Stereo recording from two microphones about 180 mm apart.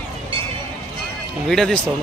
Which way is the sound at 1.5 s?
5° left (ahead or behind).